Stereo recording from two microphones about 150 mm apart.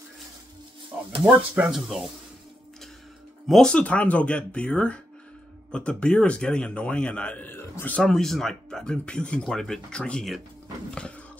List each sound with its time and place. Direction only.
1.2 s speech: 15° right (ahead or behind)
1.7 s stir: centre (ahead or behind)
3.4 s speech: 5° left (ahead or behind)